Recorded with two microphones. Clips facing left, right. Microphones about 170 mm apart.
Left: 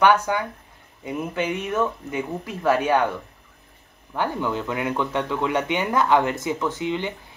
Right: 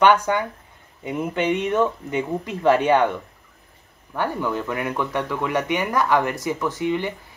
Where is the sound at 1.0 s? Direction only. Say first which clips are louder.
Right 3 dB; 5° left (ahead or behind).